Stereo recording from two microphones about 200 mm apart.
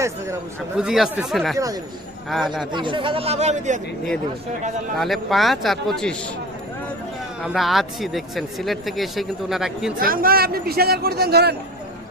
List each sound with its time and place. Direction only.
0.8 s speech: 5° right (ahead or behind)
1.5 s speech: 15° right (ahead or behind)
2.3 s speech: centre (ahead or behind)
2.7 s speech: 25° right (ahead or behind)
4.9 s speech: centre (ahead or behind)
7.4 s speech: centre (ahead or behind)
10.0 s a man's voice: 45° right (ahead or behind)